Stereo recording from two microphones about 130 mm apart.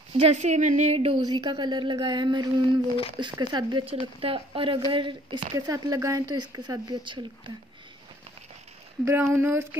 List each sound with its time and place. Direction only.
0.2 s speech: 55° right (ahead or behind)
1.2 s speech: 30° right (ahead or behind)
4.2 s speech: 45° right (ahead or behind)
5.5 s speech: 25° right (ahead or behind)
9.0 s speech: 20° right (ahead or behind)